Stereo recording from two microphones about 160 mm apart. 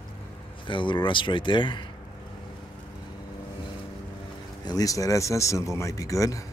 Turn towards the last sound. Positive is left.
turn(degrees=20)  # may be behind; listen again after turning